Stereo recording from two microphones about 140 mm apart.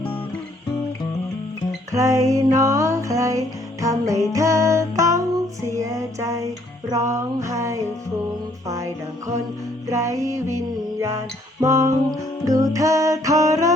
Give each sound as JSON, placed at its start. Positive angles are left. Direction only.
{"t": 1.9, "sound": "music", "side_deg": -25}
{"t": 11.6, "sound": "music", "side_deg": -20}